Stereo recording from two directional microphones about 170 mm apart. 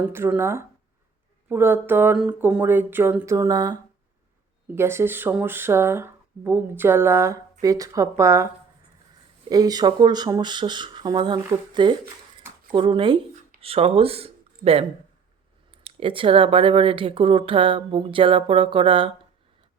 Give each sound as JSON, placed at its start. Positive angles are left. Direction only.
{"t": 0.0, "sound": "speech", "side_deg": -10}
{"t": 9.5, "sound": "speech", "side_deg": -20}